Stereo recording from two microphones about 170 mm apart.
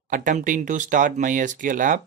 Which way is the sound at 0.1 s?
50° right (ahead or behind).